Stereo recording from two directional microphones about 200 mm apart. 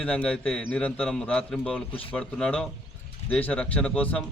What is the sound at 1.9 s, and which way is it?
Speech, 30° left (ahead or behind).